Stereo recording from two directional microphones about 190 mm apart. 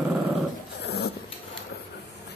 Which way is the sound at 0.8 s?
60° left (ahead or behind).